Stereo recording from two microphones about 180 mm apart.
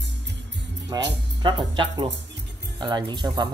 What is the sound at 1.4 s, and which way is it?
Speech, 25° right (ahead or behind).